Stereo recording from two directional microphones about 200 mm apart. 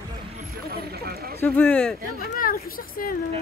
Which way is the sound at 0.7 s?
50° right (ahead or behind).